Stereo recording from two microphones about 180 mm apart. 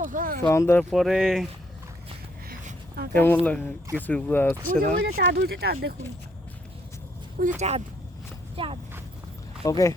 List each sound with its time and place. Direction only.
0.0 s speech: 50° right (ahead or behind)
0.4 s speech: 15° left (ahead or behind)
0.9 s speech: centre (ahead or behind)
2.5 s a sound: 55° right (ahead or behind)
3.1 s speech: 10° left (ahead or behind)
4.8 s speech: 55° right (ahead or behind)
5.2 s speech: 70° right (ahead or behind)
7.4 s speech: 55° right (ahead or behind)
8.5 s speech: 30° right (ahead or behind)
9.6 s speech: 20° left (ahead or behind)